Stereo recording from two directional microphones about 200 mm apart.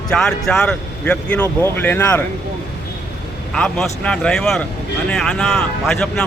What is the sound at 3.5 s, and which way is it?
A man's voice, 5° left (ahead or behind).